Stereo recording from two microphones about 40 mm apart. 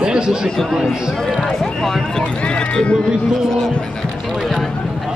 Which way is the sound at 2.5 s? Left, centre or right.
Left.